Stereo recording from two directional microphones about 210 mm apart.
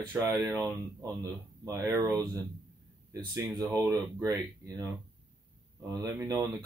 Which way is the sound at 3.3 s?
15° right (ahead or behind).